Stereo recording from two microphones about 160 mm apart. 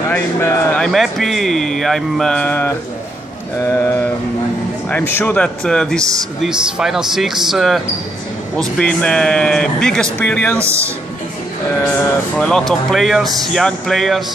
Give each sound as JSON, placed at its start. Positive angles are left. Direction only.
{"t": 0.1, "sound": "speech", "side_deg": 15}
{"t": 0.8, "sound": "a man's voice", "side_deg": 0}
{"t": 10.6, "sound": "speech", "side_deg": -15}
{"t": 12.4, "sound": "speech", "side_deg": 5}